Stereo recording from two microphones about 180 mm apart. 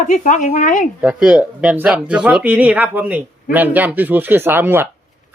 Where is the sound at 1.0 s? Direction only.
5° right (ahead or behind).